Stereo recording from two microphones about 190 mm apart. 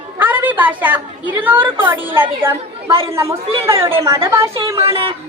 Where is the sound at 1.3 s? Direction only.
10° right (ahead or behind).